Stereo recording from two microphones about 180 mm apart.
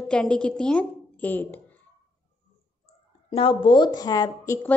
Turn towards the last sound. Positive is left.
turn(degrees=20)  # may be behind; listen again after turning